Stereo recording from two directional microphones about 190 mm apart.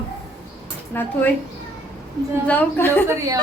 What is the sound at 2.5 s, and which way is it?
Speech, 10° left (ahead or behind).